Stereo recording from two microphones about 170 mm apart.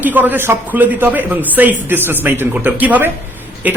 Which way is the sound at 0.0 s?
10° right (ahead or behind).